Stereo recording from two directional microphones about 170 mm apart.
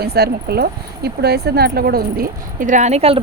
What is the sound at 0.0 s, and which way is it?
Speech, 65° right (ahead or behind).